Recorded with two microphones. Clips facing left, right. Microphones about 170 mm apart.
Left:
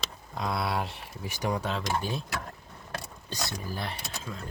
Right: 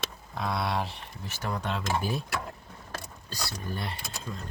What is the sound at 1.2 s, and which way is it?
Speech, 15° left (ahead or behind).